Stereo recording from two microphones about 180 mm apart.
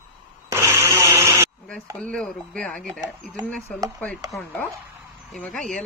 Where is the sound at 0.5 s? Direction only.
15° right (ahead or behind).